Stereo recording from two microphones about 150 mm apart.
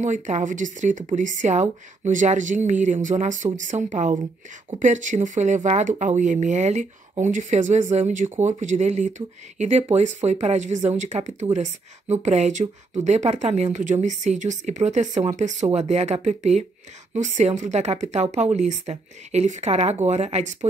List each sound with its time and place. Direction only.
0.0 s speech: 55° right (ahead or behind)